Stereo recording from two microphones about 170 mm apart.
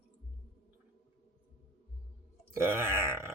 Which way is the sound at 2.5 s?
15° right (ahead or behind).